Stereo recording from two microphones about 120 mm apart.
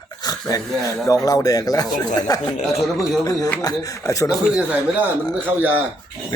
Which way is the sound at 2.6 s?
Centre (ahead or behind).